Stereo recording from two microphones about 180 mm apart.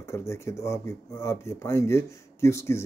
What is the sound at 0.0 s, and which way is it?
Speech, 15° left (ahead or behind).